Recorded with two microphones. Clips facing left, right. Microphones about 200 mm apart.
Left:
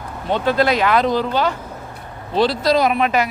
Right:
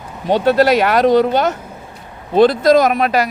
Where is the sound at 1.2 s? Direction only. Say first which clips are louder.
Right 5 dB; 45° right (ahead or behind).